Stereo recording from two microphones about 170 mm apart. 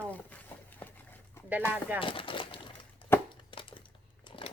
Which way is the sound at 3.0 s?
30° left (ahead or behind).